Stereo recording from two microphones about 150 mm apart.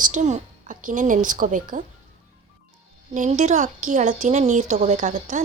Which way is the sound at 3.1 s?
55° right (ahead or behind).